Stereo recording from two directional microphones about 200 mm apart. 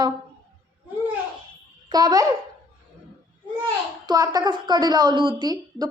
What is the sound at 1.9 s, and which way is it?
Speech, 20° right (ahead or behind).